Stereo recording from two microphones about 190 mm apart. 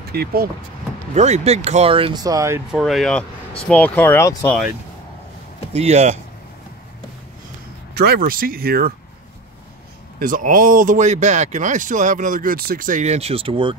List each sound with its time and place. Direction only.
0.1 s speech: 55° right (ahead or behind)
1.1 s speech: 35° right (ahead or behind); by 2.6 s 15° right (ahead or behind)
2.7 s speech: centre (ahead or behind)
5.7 s speech: 35° right (ahead or behind)
7.9 s speech: 55° right (ahead or behind)
10.1 s speech: 45° right (ahead or behind); by 13.7 s 25° right (ahead or behind)